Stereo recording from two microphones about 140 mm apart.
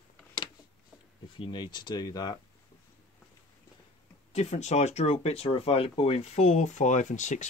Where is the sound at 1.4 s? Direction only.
30° left (ahead or behind).